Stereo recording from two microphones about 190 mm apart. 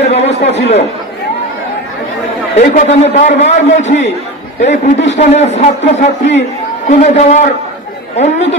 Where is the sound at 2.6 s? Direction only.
40° left (ahead or behind).